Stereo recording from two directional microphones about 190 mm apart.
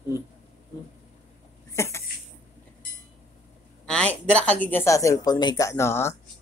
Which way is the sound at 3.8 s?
5° left (ahead or behind).